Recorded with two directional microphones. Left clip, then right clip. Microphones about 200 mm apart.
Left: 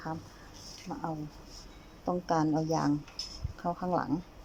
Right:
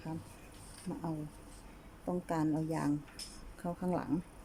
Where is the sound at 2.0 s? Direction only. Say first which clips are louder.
Left 6 dB; 5° left (ahead or behind).